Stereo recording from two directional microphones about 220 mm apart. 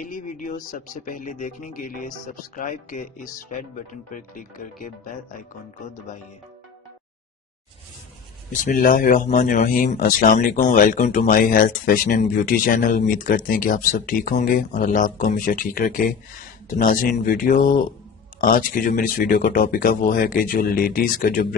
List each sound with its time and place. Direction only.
0.0 s a man's voice: 35° left (ahead or behind)
8.5 s a man's voice: 35° left (ahead or behind)